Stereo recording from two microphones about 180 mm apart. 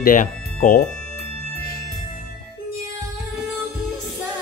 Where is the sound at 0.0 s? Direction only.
50° left (ahead or behind).